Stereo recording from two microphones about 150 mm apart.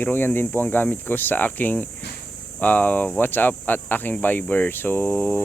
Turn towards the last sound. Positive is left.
turn(degrees=5)  # may be behind; listen again after turning